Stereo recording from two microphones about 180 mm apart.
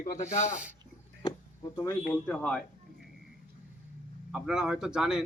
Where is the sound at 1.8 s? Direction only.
10° left (ahead or behind).